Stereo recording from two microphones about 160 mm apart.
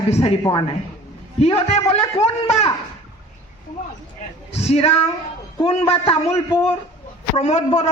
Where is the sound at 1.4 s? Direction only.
40° left (ahead or behind).